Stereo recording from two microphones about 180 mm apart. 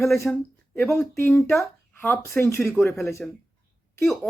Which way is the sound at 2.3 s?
10° left (ahead or behind).